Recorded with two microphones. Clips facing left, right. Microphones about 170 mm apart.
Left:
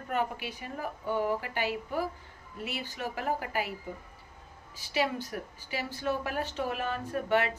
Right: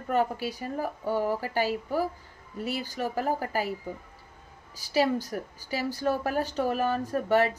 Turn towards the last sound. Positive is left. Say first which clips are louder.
# right 4 dB
turn(degrees=-40)  # may be behind; listen again after turning